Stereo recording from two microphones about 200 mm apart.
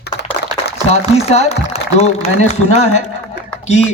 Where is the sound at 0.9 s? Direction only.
30° left (ahead or behind).